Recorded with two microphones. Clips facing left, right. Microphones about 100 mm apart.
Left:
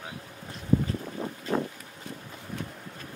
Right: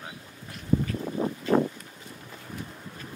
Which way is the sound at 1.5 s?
45° right (ahead or behind).